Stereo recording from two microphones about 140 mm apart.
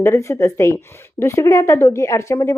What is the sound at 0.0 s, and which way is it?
A woman's voice, 20° left (ahead or behind).